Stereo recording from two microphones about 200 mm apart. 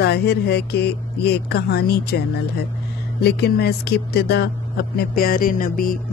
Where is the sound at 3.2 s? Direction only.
55° left (ahead or behind).